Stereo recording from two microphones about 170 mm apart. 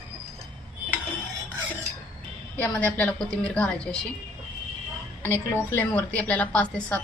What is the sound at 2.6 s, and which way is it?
A woman's voice, 5° left (ahead or behind).